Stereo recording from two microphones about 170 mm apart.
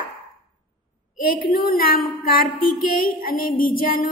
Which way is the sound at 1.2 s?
60° left (ahead or behind).